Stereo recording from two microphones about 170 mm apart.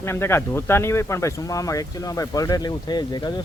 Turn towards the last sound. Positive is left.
turn(degrees=25)  # may be behind; listen again after turning